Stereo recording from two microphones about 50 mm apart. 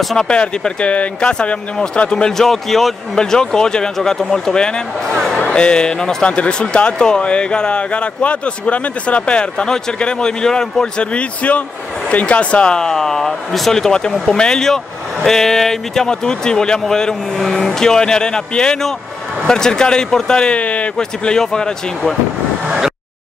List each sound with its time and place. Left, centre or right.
0.0 s speech: centre
0.3 s speech: left
21.0 s speech: centre
22.7 s vehicle: centre